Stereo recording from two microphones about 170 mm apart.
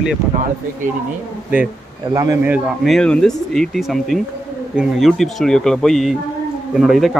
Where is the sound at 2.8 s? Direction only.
5° left (ahead or behind).